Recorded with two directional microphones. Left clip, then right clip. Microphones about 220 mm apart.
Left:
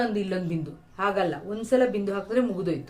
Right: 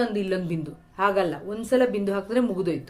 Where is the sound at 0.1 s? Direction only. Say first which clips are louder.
Right 2 dB; 35° right (ahead or behind).